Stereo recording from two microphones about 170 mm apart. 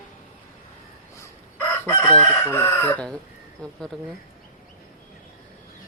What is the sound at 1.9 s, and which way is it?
Chicken, 15° left (ahead or behind).